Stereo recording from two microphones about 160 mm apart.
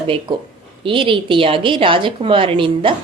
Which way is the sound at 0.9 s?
30° right (ahead or behind).